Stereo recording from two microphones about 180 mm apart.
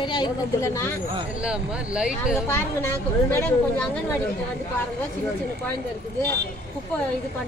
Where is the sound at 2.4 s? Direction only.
10° left (ahead or behind).